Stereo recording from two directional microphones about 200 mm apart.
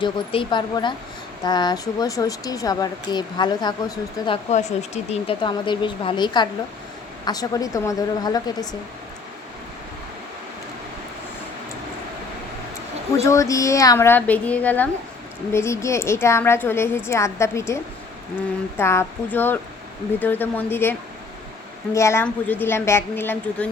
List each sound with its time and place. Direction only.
0.0 s speech: 25° left (ahead or behind)
4.5 s speech: 30° left (ahead or behind)
13.2 s speech: 15° left (ahead or behind)
18.8 s speech: 10° left (ahead or behind)
21.9 s speech: 15° left (ahead or behind)